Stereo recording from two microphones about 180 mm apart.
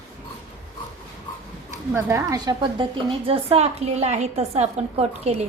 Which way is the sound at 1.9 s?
15° right (ahead or behind).